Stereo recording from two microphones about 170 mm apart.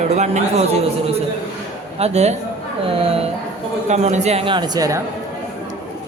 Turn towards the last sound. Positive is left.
turn(degrees=-20)  # may be behind; listen again after turning